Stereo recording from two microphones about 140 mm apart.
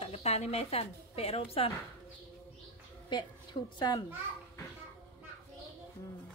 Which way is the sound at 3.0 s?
35° left (ahead or behind).